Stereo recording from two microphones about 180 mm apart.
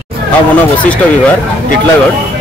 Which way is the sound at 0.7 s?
5° left (ahead or behind).